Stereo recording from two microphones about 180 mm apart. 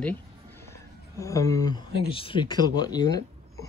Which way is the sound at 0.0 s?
10° left (ahead or behind).